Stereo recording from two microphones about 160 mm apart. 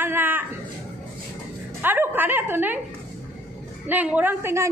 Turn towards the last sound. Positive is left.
turn(degrees=-15)  # may be behind; listen again after turning